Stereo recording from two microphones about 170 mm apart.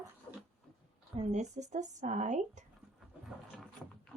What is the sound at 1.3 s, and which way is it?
Speech, 45° right (ahead or behind).